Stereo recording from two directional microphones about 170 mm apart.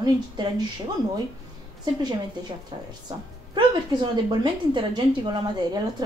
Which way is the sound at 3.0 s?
25° right (ahead or behind).